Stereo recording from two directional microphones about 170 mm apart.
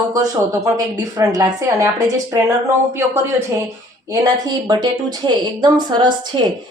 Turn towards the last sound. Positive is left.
turn(degrees=-25)  # may be behind; listen again after turning